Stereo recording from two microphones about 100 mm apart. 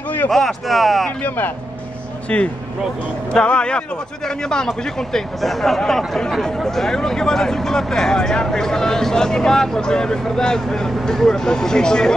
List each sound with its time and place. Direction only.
0.3 s speech: centre (ahead or behind)
1.2 s speech: 20° left (ahead or behind)